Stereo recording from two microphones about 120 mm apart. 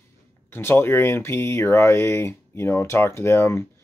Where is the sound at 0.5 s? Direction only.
20° left (ahead or behind).